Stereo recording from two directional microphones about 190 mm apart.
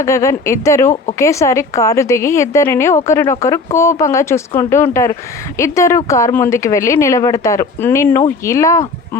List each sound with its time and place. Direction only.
0.0 s a woman's voice: 15° left (ahead or behind)